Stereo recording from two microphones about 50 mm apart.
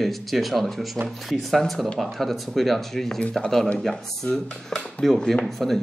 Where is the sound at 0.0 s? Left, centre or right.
Centre.